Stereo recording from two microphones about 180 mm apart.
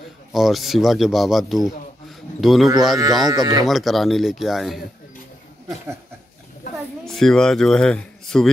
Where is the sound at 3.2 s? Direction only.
20° right (ahead or behind).